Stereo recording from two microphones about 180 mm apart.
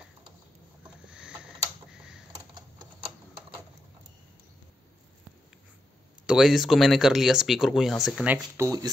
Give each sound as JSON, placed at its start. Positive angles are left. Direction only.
{"t": 1.0, "sound": "a sound", "side_deg": -5}
{"t": 2.0, "sound": "typing", "side_deg": -5}
{"t": 6.2, "sound": "speech", "side_deg": 0}
{"t": 8.5, "sound": "speech", "side_deg": -20}